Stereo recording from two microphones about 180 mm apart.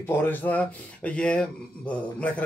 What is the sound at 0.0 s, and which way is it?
Speech, 10° left (ahead or behind).